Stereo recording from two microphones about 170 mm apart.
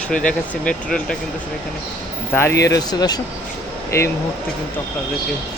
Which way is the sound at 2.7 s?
25° left (ahead or behind).